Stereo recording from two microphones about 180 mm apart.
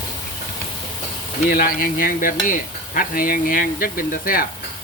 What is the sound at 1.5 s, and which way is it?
Speech, 55° left (ahead or behind).